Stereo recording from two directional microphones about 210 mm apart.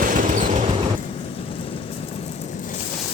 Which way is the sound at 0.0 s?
40° right (ahead or behind).